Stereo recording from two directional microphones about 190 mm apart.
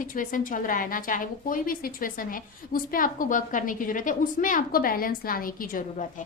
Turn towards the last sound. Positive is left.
turn(degrees=45)  # may be behind; listen again after turning